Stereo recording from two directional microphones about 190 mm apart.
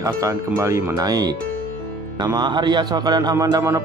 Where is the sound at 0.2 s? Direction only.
15° right (ahead or behind).